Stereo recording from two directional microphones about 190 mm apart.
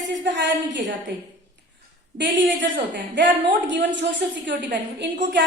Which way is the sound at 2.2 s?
70° right (ahead or behind).